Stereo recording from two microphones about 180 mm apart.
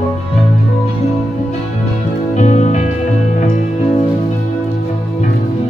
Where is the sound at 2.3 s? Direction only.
40° left (ahead or behind).